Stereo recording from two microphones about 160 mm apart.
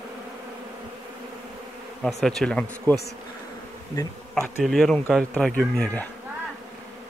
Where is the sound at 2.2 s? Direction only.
5° left (ahead or behind).